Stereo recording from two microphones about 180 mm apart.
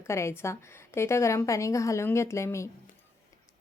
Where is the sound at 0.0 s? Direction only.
15° left (ahead or behind).